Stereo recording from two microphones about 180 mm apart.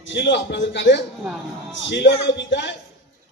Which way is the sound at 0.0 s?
80° left.